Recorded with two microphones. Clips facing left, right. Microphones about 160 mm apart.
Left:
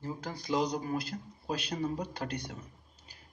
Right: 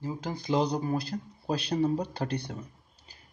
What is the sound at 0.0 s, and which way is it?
Speech, 20° right (ahead or behind).